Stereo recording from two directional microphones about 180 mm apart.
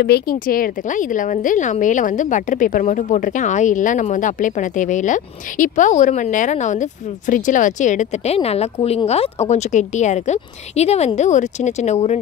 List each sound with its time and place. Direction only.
0.0 s a woman's voice: 60° left (ahead or behind); by 12.2 s 40° left (ahead or behind)